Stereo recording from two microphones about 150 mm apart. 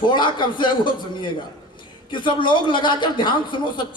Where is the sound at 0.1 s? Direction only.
30° left (ahead or behind).